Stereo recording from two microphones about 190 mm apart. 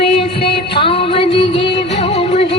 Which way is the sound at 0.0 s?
30° left (ahead or behind).